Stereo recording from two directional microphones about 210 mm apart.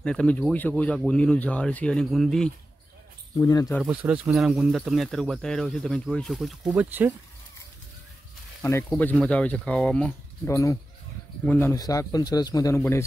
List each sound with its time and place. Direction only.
0.0 s speech: 5° left (ahead or behind)
3.3 s speech: 15° left (ahead or behind)
3.8 s speech: 5° right (ahead or behind)
8.6 s speech: 10° left (ahead or behind)